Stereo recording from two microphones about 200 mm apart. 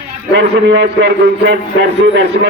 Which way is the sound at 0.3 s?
60° right (ahead or behind).